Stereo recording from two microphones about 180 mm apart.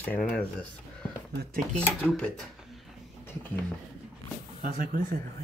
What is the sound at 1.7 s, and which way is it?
Speech, 5° left (ahead or behind).